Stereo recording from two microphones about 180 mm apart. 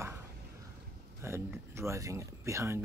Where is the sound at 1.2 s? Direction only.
15° right (ahead or behind).